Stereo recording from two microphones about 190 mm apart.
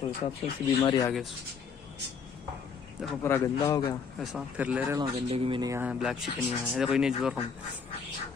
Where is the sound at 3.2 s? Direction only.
15° left (ahead or behind).